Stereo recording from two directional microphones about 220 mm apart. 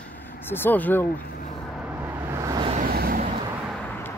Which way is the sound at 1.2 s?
40° left (ahead or behind).